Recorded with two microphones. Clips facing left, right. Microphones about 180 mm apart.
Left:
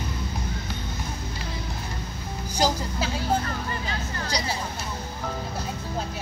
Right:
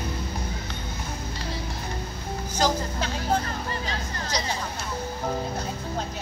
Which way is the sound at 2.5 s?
10° left (ahead or behind).